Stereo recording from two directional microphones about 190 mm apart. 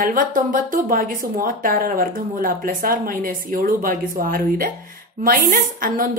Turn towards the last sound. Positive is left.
turn(degrees=-50)  # may be behind; listen again after turning